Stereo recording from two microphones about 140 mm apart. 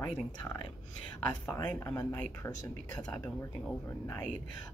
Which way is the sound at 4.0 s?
15° left (ahead or behind).